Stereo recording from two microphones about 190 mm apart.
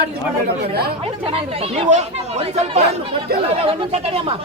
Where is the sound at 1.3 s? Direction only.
30° right (ahead or behind).